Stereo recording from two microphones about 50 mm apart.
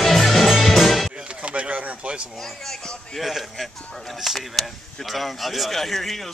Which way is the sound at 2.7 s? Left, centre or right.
Centre.